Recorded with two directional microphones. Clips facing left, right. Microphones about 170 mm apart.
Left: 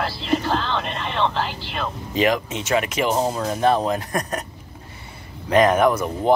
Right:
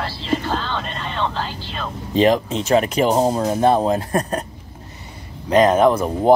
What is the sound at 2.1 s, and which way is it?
Speech, 35° right (ahead or behind).